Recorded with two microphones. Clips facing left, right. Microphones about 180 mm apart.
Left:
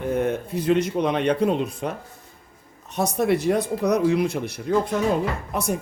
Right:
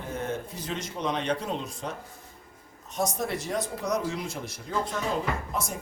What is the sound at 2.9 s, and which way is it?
Speech, 65° left (ahead or behind).